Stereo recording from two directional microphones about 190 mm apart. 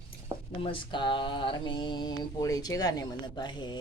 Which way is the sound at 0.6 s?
25° left (ahead or behind).